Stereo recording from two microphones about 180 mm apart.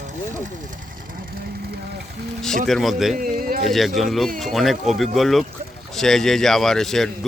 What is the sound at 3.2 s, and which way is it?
Speech, 55° right (ahead or behind).